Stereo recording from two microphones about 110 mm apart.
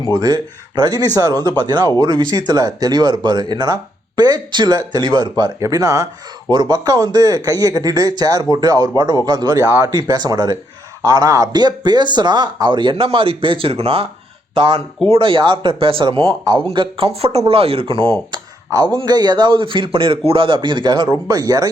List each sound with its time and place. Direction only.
0.1 s speech: 35° right (ahead or behind); by 18.1 s 55° right (ahead or behind)
18.3 s a sound: 40° right (ahead or behind)
19.0 s speech: 40° right (ahead or behind)